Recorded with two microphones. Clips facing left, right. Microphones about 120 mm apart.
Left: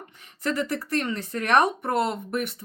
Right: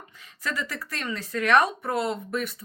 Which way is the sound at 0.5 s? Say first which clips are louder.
Left 7 dB; 60° left (ahead or behind).